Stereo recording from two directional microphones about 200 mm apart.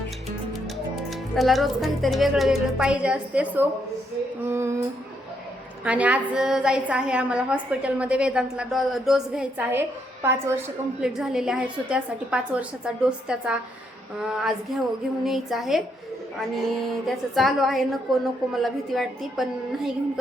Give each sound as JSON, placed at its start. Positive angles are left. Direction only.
{"t": 1.1, "sound": "a woman's voice", "side_deg": 0}
{"t": 5.8, "sound": "a woman's voice", "side_deg": -5}